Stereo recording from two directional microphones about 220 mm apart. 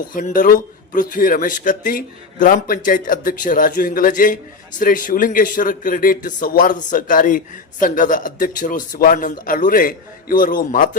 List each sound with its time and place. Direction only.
0.0 s speech: 35° left (ahead or behind)